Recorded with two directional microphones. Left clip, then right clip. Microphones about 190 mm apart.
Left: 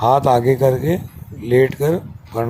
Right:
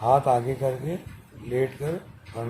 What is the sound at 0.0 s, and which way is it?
A man's voice, 40° left (ahead or behind).